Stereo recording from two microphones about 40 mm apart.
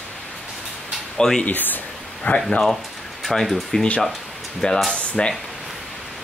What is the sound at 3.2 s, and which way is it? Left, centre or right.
Speech, centre.